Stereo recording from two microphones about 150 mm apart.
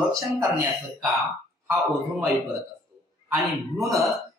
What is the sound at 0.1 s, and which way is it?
Speech, 20° right (ahead or behind).